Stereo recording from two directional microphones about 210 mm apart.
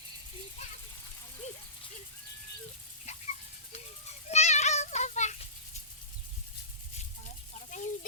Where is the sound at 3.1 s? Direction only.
30° left (ahead or behind).